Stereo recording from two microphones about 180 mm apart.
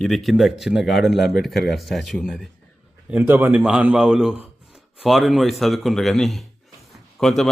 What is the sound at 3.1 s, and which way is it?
A man's voice, 10° right (ahead or behind).